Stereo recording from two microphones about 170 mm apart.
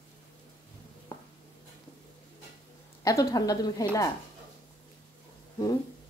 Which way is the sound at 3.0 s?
20° left (ahead or behind).